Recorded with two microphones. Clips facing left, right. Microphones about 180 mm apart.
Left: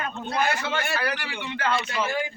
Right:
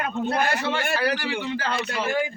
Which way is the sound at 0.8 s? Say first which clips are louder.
Right 4 dB; 35° right (ahead or behind).